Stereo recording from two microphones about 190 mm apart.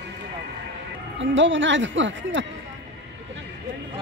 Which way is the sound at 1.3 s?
80° right.